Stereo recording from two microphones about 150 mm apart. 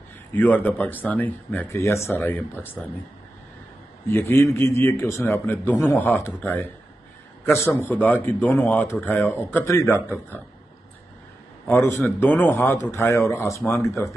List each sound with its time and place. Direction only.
0.3 s speech: 10° left (ahead or behind)
4.1 s speech: 15° left (ahead or behind)
11.6 s speech: 15° left (ahead or behind)